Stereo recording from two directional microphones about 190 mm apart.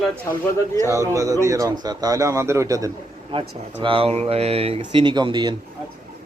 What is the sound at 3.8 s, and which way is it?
Speech, 30° right (ahead or behind).